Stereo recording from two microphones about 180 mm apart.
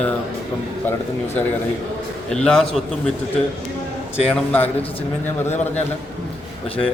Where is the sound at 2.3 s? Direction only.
5° left (ahead or behind).